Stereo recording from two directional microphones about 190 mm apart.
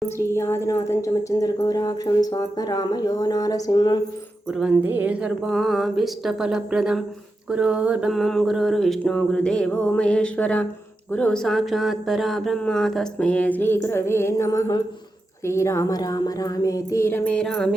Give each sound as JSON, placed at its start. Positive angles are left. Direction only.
{"t": 0.0, "sound": "speech", "side_deg": 15}
{"t": 4.5, "sound": "a sound", "side_deg": -5}
{"t": 15.4, "sound": "speech", "side_deg": 15}